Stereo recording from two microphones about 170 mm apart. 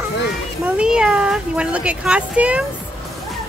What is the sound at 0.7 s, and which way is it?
Speech, 5° right (ahead or behind).